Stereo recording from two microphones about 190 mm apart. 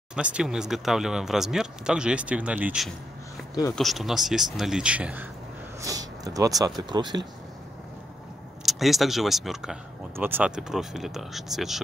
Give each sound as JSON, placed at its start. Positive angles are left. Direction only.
{"t": 0.1, "sound": "speech", "side_deg": -5}
{"t": 5.8, "sound": "a sound", "side_deg": -20}
{"t": 6.9, "sound": "speech", "side_deg": -25}
{"t": 8.6, "sound": "speech", "side_deg": 0}